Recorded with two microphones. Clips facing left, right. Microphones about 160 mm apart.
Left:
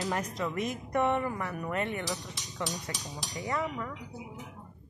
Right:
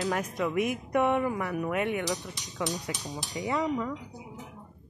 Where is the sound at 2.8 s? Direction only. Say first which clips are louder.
Right 4 dB; 20° right (ahead or behind).